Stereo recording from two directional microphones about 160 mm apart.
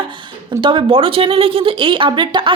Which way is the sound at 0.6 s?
30° right (ahead or behind).